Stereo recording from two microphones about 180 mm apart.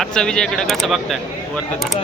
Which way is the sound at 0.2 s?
Centre (ahead or behind).